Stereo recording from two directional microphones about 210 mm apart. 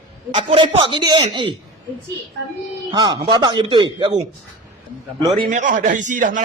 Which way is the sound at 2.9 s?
20° right (ahead or behind).